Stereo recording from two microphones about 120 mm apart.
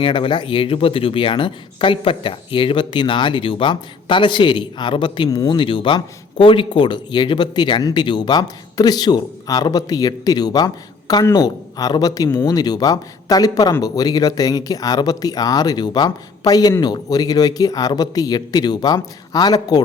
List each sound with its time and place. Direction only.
0.0 s speech: 45° left (ahead or behind)
5.3 s speech: 30° left (ahead or behind)
5.5 s speech: 45° left (ahead or behind)